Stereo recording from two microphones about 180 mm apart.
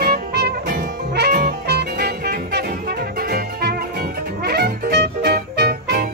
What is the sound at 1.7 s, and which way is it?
Music, 65° right (ahead or behind).